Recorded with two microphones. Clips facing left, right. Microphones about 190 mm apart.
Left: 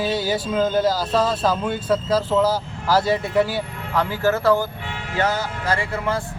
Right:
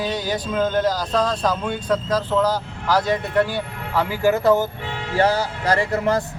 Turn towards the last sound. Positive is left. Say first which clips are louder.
# right 4 dB
turn(degrees=-40)  # may be behind; listen again after turning